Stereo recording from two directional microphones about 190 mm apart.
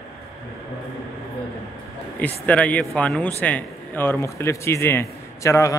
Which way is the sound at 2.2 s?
10° left (ahead or behind).